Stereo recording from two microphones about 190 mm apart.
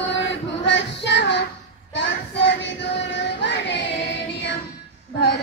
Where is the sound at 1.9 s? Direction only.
70° left (ahead or behind).